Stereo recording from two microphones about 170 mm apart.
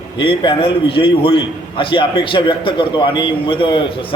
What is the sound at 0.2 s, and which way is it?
A man's voice, 30° left (ahead or behind).